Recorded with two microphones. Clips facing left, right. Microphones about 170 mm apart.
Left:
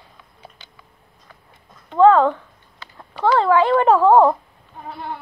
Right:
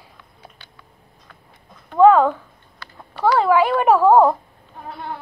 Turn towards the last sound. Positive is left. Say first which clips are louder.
# even
turn(degrees=-5)  # may be behind; listen again after turning